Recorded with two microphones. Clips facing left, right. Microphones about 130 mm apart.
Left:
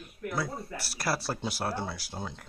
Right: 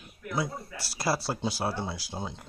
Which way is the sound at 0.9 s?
15° right (ahead or behind).